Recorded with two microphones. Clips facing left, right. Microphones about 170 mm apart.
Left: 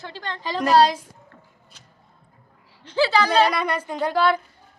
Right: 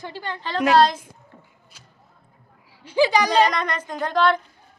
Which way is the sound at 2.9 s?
15° right (ahead or behind).